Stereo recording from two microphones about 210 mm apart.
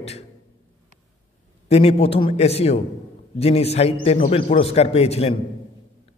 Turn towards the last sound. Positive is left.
turn(degrees=30)  # may be behind; listen again after turning